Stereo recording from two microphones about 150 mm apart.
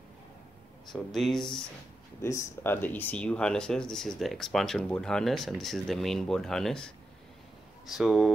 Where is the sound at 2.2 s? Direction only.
20° left (ahead or behind).